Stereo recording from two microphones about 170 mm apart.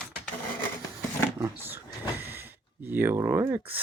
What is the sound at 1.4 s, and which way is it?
Dog, 15° right (ahead or behind).